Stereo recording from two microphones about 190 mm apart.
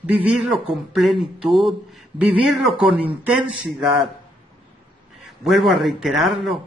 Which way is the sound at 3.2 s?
5° right (ahead or behind).